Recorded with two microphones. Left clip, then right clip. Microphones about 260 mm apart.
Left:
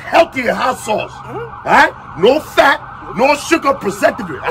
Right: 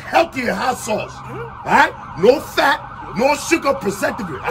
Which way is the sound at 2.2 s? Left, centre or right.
Centre.